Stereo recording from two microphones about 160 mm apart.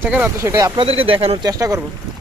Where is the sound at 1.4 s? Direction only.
20° right (ahead or behind).